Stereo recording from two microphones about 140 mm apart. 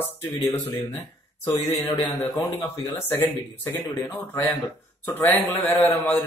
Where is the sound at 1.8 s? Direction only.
20° left (ahead or behind).